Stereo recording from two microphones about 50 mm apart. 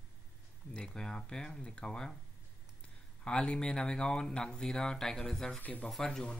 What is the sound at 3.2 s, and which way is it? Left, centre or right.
Speech, centre.